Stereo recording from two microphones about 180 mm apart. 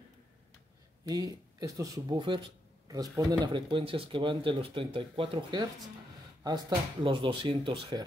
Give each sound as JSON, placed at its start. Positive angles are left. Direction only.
{"t": 1.0, "sound": "speech", "side_deg": -20}